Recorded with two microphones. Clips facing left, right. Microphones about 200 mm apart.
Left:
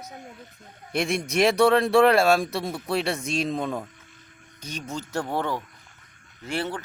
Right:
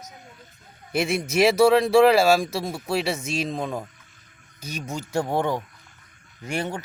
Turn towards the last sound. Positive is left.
turn(degrees=-15)  # may be behind; listen again after turning